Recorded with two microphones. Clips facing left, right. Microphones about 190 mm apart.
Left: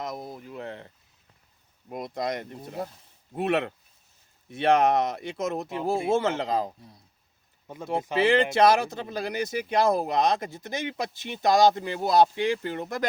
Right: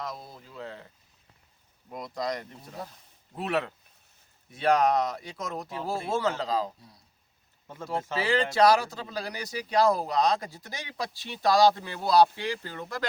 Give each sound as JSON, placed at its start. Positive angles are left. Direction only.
{"t": 0.0, "sound": "speech", "side_deg": 20}
{"t": 1.9, "sound": "speech", "side_deg": 20}
{"t": 4.5, "sound": "speech", "side_deg": 25}
{"t": 7.7, "sound": "speech", "side_deg": 15}